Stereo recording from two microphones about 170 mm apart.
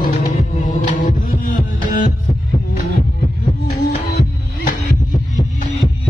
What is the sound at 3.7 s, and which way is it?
Heart sounds, 65° left (ahead or behind).